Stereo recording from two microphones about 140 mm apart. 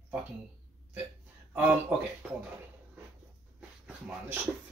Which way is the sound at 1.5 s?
10° right (ahead or behind).